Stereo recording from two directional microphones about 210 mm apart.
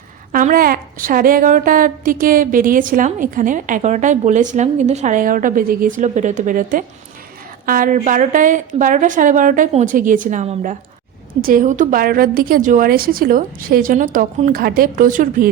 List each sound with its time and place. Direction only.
0.3 s a woman's voice: 40° right (ahead or behind)